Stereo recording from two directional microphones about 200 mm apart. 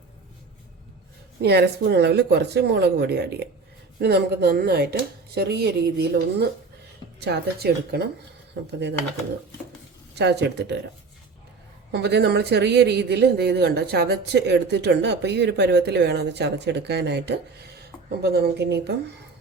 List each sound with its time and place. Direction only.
1.4 s speech: 55° right (ahead or behind)
10.2 s speech: 55° right (ahead or behind)
11.9 s speech: 55° right (ahead or behind)